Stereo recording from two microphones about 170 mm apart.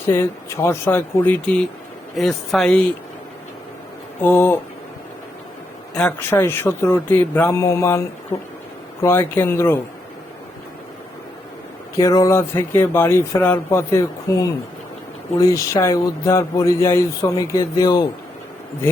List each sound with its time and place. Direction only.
0.1 s speech: 15° left (ahead or behind)
4.2 s speech: 10° left (ahead or behind)
5.9 s speech: 5° left (ahead or behind)
11.9 s speech: 20° left (ahead or behind)